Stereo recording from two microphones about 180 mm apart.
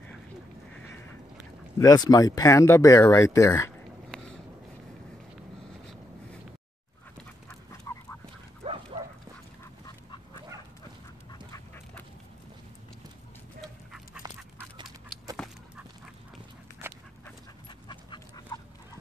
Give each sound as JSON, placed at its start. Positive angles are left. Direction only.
{"t": 0.7, "sound": "a sound", "side_deg": 10}
{"t": 1.8, "sound": "speech", "side_deg": 20}
{"t": 7.9, "sound": "duck", "side_deg": 15}
{"t": 8.6, "sound": "dog", "side_deg": -35}
{"t": 9.8, "sound": "duck", "side_deg": 25}
{"t": 11.5, "sound": "duck", "side_deg": 10}
{"t": 13.6, "sound": "dog", "side_deg": 0}
{"t": 15.3, "sound": "dog", "side_deg": 0}
{"t": 17.6, "sound": "dog", "side_deg": 25}